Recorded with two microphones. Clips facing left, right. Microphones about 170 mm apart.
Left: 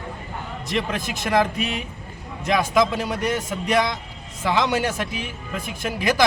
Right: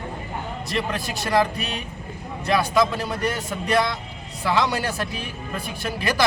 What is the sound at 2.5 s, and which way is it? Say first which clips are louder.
Speech: left 1 dB; 15° left (ahead or behind).